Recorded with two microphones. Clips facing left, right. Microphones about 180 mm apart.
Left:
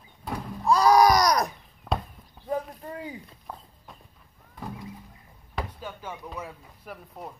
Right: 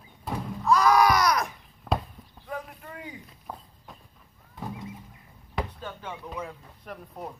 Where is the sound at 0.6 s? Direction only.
35° left (ahead or behind).